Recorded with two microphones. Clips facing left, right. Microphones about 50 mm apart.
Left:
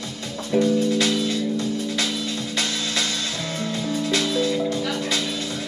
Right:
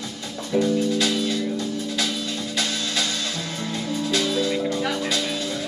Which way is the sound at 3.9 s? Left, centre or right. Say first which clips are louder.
Even; left.